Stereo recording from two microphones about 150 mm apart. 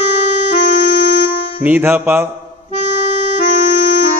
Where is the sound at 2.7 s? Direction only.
45° right (ahead or behind).